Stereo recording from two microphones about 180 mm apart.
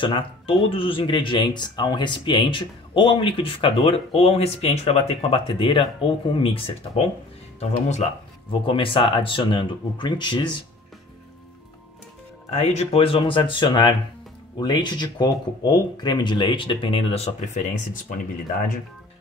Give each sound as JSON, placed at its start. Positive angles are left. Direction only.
{"t": 0.0, "sound": "speech", "side_deg": 30}
{"t": 12.4, "sound": "speech", "side_deg": 35}